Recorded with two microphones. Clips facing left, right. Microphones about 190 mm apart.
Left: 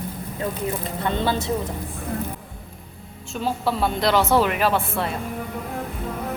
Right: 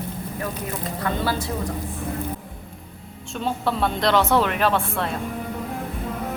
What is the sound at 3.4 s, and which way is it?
Speech, 5° left (ahead or behind).